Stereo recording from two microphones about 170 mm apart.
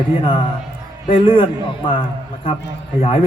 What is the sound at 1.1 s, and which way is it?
A man's voice, 30° left (ahead or behind).